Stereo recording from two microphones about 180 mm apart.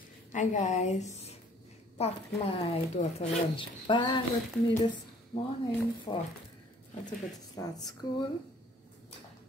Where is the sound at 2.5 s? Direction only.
35° left (ahead or behind).